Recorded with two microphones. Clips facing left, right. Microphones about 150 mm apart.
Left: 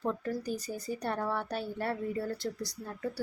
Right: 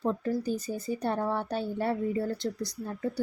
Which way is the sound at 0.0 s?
20° right (ahead or behind).